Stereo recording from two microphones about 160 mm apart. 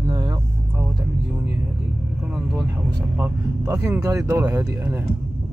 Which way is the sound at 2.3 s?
5° right (ahead or behind).